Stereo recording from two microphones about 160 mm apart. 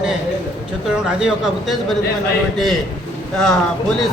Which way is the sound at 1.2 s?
5° right (ahead or behind).